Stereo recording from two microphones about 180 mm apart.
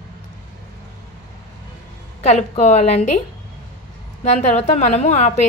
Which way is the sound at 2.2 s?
40° left (ahead or behind).